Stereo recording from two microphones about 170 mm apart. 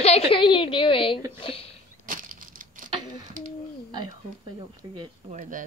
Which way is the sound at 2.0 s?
50° right (ahead or behind).